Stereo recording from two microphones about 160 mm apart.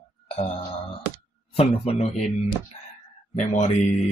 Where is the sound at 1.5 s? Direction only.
40° left (ahead or behind).